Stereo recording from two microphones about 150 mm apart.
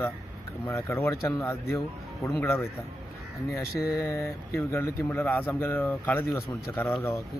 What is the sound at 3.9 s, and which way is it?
Speech, 20° left (ahead or behind).